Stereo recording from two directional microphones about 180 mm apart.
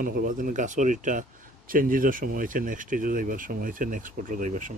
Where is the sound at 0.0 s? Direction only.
50° right (ahead or behind).